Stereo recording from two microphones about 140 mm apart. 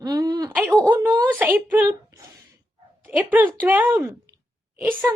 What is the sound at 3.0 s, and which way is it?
Speech, 10° right (ahead or behind).